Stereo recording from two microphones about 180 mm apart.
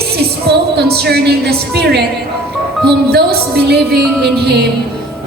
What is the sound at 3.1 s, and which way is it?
Speech, 60° right (ahead or behind).